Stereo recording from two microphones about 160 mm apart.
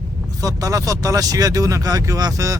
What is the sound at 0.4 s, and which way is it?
Speech, 20° right (ahead or behind).